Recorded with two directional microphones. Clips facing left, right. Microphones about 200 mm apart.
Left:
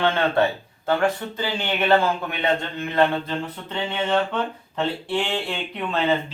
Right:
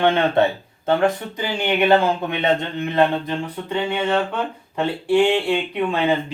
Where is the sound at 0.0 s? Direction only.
15° right (ahead or behind).